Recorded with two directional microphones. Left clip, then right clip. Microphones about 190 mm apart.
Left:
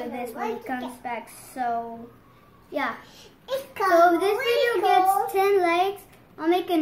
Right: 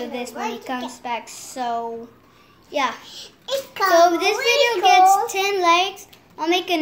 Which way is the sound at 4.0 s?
5° right (ahead or behind).